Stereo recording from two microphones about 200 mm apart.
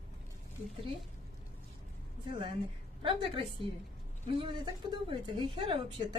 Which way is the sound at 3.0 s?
25° right (ahead or behind).